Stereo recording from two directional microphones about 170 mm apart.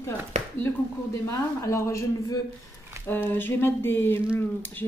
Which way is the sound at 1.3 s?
15° left (ahead or behind).